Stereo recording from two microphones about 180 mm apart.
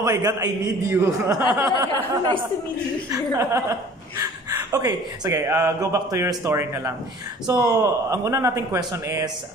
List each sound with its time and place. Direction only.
0.0 s a man's voice: 20° right (ahead or behind)
3.1 s speech: 15° right (ahead or behind)